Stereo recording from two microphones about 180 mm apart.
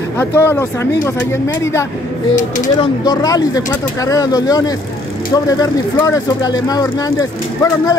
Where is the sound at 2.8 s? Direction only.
20° left (ahead or behind).